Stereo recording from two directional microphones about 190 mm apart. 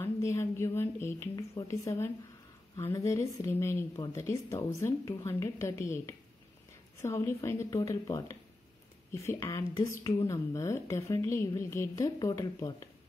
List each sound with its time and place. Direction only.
0.0 s a woman's voice: 15° left (ahead or behind)